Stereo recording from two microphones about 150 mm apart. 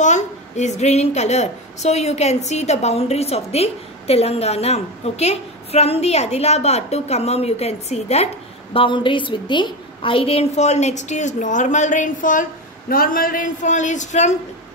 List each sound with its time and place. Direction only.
0.0 s a woman's voice: 50° left (ahead or behind)
8.7 s a woman's voice: 35° left (ahead or behind); by 12.4 s 60° left (ahead or behind)
12.9 s speech: 70° left (ahead or behind); by 14.3 s 50° left (ahead or behind)